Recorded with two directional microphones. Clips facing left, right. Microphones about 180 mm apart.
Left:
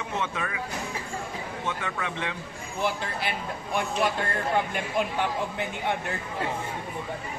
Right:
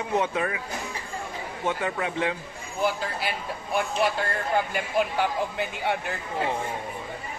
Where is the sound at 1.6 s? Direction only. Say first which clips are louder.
Right 6 dB; 35° right (ahead or behind).